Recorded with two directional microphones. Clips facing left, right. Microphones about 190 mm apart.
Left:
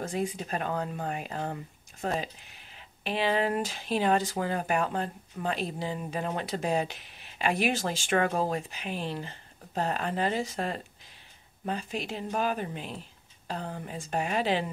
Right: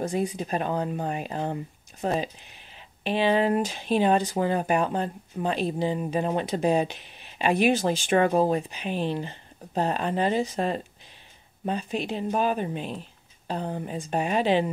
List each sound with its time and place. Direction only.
0.4 s speech: 20° right (ahead or behind)